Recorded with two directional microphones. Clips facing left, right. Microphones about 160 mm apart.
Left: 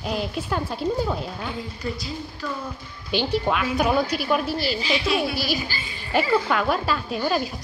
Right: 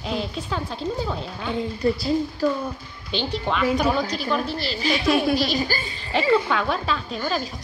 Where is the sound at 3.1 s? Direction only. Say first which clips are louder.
Left 3 dB; 10° left (ahead or behind).